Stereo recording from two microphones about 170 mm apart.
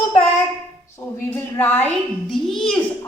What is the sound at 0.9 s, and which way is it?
A child's voice, 15° left (ahead or behind).